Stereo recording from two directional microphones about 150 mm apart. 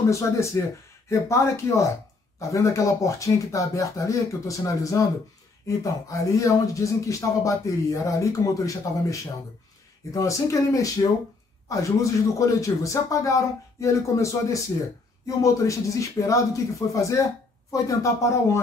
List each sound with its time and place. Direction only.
0.1 s speech: 20° left (ahead or behind)